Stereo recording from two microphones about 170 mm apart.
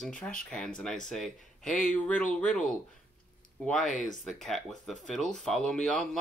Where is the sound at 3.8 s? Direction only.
50° left (ahead or behind).